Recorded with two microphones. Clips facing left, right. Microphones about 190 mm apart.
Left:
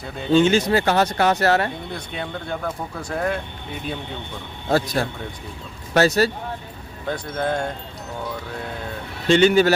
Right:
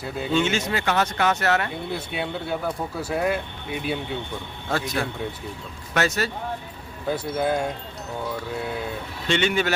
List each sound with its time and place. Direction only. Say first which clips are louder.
0.3 s speech: left 8 dB; 35° left (ahead or behind)
1.9 s speech: right 2 dB; 5° right (ahead or behind)
4.7 s speech: left 5 dB; 35° left (ahead or behind)
7.1 s speech: right 1 dB; 5° right (ahead or behind)
9.3 s speech: left 8 dB; 35° left (ahead or behind)